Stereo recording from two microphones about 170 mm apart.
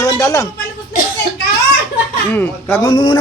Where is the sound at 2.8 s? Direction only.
25° left (ahead or behind).